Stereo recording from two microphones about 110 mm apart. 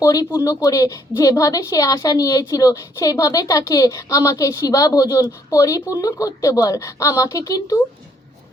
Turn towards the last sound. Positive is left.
turn(degrees=35)  # may be behind; listen again after turning